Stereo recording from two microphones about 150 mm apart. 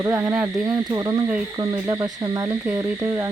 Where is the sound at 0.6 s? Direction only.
25° right (ahead or behind).